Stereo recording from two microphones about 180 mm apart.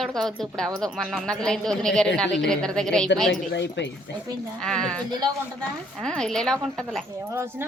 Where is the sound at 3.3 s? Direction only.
75° left (ahead or behind).